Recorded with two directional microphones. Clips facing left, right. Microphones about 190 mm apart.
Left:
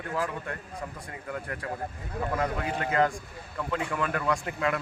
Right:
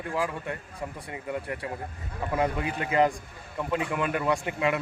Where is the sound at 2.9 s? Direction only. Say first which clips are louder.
Right 3 dB; 15° right (ahead or behind).